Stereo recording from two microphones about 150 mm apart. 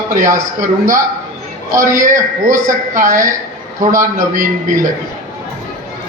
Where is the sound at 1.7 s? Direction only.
20° right (ahead or behind).